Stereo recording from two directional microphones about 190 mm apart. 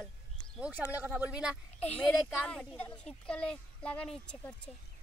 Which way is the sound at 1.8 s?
5° left (ahead or behind).